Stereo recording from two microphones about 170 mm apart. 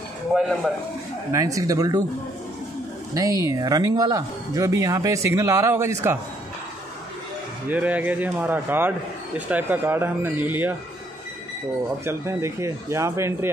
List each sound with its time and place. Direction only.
0.3 s speech: centre (ahead or behind)
1.3 s speech: 20° right (ahead or behind)
3.2 s speech: 20° right (ahead or behind)
7.7 s speech: 10° right (ahead or behind)
12.0 s speech: 15° right (ahead or behind)